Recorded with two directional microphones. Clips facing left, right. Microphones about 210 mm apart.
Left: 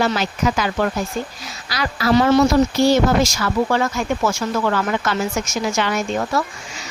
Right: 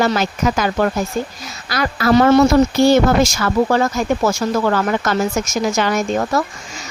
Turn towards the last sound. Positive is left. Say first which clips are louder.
# right 3 dB
turn(degrees=-45)  # may be behind; listen again after turning